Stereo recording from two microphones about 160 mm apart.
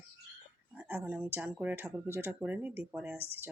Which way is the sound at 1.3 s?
10° right (ahead or behind).